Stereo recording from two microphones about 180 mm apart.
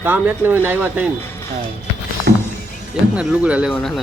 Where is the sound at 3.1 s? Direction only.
5° right (ahead or behind).